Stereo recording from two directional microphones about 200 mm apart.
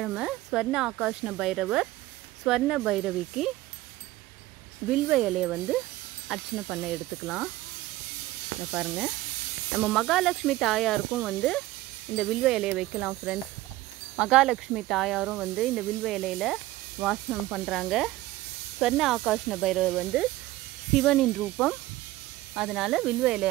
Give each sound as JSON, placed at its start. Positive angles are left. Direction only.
{"t": 0.0, "sound": "speech", "side_deg": -5}
{"t": 4.8, "sound": "speech", "side_deg": 0}
{"t": 8.7, "sound": "speech", "side_deg": 0}